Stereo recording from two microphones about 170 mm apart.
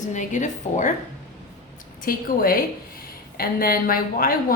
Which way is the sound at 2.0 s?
60° left (ahead or behind).